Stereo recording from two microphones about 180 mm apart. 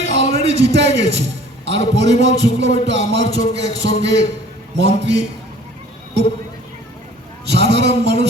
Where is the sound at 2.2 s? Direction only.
75° right (ahead or behind).